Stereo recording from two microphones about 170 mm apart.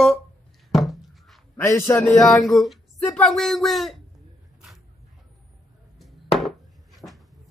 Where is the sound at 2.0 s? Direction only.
Centre (ahead or behind).